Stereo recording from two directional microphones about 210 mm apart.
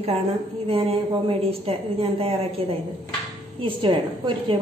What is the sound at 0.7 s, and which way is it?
A woman's voice, 25° right (ahead or behind).